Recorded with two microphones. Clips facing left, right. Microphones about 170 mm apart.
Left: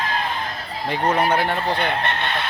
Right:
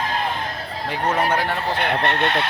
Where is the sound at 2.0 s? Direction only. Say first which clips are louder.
Right 4 dB; 70° right (ahead or behind).